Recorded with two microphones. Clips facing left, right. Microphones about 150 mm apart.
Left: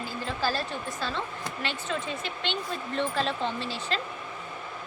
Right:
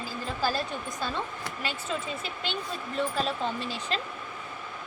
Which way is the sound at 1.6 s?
5° right (ahead or behind).